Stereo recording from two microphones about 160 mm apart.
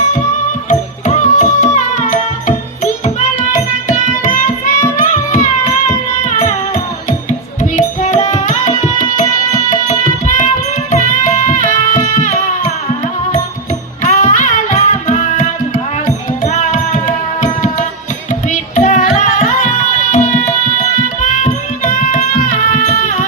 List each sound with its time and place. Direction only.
0.7 s music: 50° left (ahead or behind)
3.5 s music: 50° left (ahead or behind)
4.9 s carnatic music: 50° left (ahead or behind)
7.6 s music: 50° left (ahead or behind)
14.0 s music: 50° left (ahead or behind)